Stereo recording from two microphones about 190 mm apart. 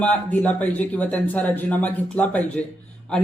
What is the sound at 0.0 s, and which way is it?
A man's voice, 10° left (ahead or behind).